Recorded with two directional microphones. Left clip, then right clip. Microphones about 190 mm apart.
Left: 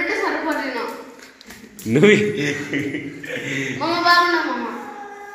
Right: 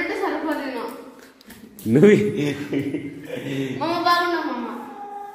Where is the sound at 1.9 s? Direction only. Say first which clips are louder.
Left 1 dB; 30° right (ahead or behind).